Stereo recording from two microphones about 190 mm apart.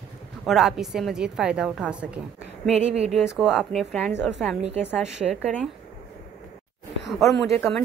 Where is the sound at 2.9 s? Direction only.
35° right (ahead or behind).